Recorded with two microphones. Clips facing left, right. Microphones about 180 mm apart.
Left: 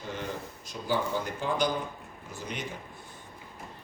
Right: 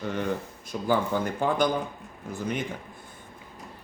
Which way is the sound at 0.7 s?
75° right (ahead or behind).